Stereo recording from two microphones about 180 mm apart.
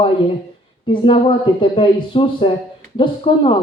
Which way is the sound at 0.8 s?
30° left (ahead or behind).